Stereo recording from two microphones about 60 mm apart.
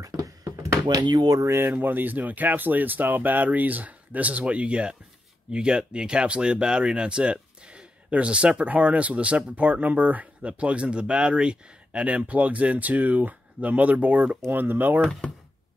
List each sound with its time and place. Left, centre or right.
0.0 s a sound: right
1.4 s speech: right
1.7 s speech: right